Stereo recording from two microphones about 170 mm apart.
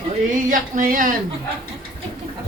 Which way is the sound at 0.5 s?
55° right (ahead or behind).